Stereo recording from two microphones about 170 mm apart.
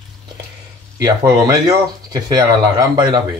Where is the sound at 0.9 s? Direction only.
20° right (ahead or behind).